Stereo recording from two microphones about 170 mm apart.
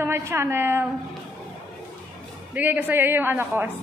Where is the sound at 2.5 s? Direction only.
10° right (ahead or behind).